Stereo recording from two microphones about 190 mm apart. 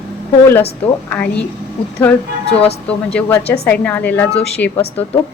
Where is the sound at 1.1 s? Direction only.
5° left (ahead or behind).